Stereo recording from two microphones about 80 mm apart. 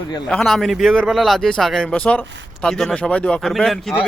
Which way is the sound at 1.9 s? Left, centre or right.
Centre.